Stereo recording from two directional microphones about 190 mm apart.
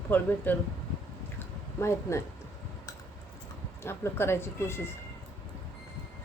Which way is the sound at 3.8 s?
15° left (ahead or behind).